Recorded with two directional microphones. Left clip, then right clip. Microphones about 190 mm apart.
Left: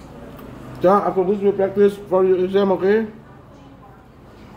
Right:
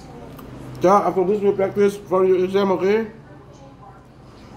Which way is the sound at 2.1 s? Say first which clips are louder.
Left 1 dB; 5° right (ahead or behind).